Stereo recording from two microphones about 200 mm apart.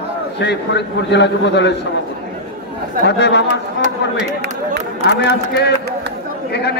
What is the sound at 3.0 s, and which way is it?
Speech, 60° left (ahead or behind).